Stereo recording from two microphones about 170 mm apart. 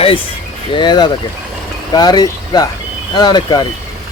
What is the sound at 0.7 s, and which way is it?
Speech, 25° left (ahead or behind).